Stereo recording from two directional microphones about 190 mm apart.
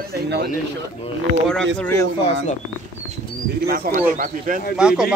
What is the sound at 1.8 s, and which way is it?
Speech, 15° left (ahead or behind).